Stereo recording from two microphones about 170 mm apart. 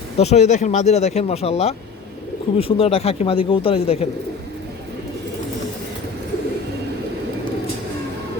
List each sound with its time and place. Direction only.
0.2 s speech: 40° left (ahead or behind)